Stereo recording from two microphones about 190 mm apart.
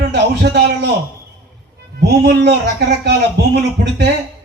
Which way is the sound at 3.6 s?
60° right (ahead or behind).